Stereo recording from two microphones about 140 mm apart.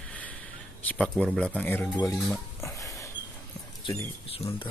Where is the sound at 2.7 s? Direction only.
20° left (ahead or behind).